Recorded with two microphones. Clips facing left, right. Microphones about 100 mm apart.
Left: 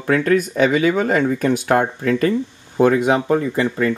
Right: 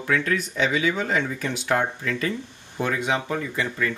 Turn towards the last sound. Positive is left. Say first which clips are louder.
# left 8 dB
turn(degrees=40)  # may be behind; listen again after turning